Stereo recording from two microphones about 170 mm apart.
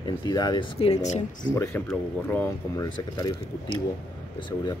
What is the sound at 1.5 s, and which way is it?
Speech, 15° left (ahead or behind).